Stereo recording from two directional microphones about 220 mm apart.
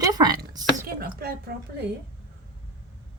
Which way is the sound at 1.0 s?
40° right (ahead or behind).